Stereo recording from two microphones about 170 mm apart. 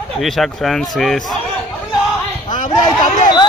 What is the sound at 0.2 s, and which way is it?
Speech, centre (ahead or behind).